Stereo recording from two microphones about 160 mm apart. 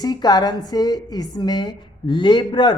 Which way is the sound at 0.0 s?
25° left (ahead or behind).